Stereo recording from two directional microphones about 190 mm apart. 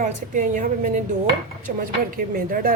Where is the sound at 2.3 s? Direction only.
50° right (ahead or behind).